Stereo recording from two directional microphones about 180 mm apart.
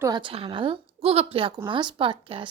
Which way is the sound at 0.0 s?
25° right (ahead or behind).